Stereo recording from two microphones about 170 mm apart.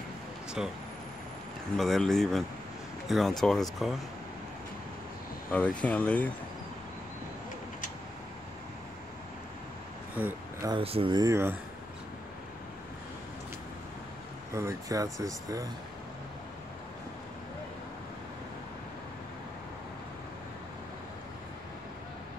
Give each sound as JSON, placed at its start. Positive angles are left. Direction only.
{"t": 0.6, "sound": "speech", "side_deg": -5}
{"t": 1.8, "sound": "speech", "side_deg": 0}
{"t": 5.5, "sound": "speech", "side_deg": 5}
{"t": 10.1, "sound": "a sound", "side_deg": -10}
{"t": 10.7, "sound": "speech", "side_deg": -35}
{"t": 14.5, "sound": "speech", "side_deg": -15}